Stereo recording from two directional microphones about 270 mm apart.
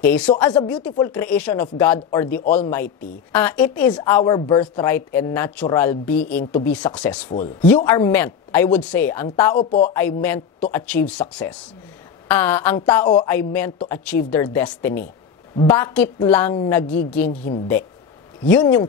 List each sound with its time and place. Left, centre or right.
0.0 s a woman's voice: centre
9.6 s speech: left
9.9 s a woman's voice: centre
18.4 s a woman's voice: centre